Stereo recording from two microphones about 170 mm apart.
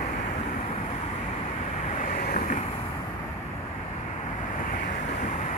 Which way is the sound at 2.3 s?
45° left (ahead or behind).